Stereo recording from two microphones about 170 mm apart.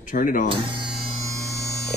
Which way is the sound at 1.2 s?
20° right (ahead or behind).